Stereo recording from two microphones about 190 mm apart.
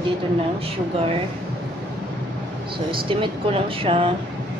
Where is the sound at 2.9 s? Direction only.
25° right (ahead or behind).